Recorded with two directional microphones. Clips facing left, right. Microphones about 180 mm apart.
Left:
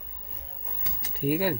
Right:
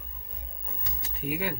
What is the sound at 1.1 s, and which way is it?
Speech, 40° left (ahead or behind).